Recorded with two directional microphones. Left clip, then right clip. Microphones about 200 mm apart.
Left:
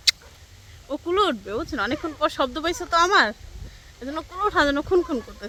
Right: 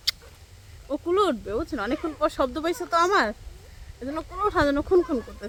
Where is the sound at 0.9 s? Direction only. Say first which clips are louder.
Left 1 dB; centre (ahead or behind).